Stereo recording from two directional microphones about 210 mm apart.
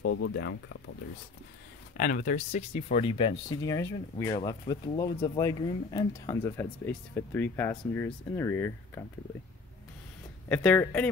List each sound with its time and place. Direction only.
0.0 s speech: 55° left (ahead or behind)
2.0 s speech: 40° left (ahead or behind); by 9.0 s 10° left (ahead or behind)
10.5 s speech: 5° left (ahead or behind)